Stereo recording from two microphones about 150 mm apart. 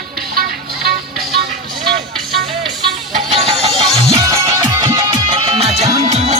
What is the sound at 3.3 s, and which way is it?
Music, 40° right (ahead or behind).